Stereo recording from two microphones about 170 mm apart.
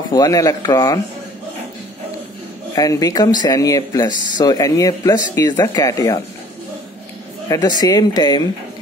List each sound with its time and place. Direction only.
0.1 s speech: 20° left (ahead or behind)
2.7 s speech: 20° left (ahead or behind)
7.4 s speech: 20° left (ahead or behind)